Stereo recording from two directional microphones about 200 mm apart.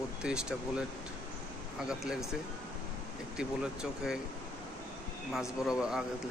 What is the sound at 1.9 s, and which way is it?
Speech, 5° right (ahead or behind).